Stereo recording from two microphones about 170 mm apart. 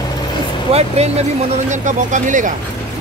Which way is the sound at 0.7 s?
40° right (ahead or behind).